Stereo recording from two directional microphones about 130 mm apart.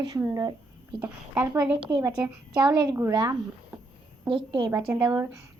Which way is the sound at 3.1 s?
30° right (ahead or behind).